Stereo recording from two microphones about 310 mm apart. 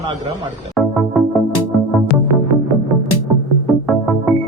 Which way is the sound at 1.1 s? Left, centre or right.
Centre.